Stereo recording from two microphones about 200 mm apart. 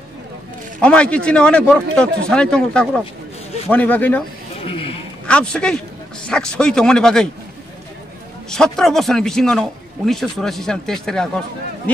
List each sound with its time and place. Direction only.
0.7 s a man's voice: 5° left (ahead or behind)
4.6 s a sound: 30° left (ahead or behind)
5.2 s a man's voice: 5° left (ahead or behind)
8.5 s a man's voice: 5° left (ahead or behind)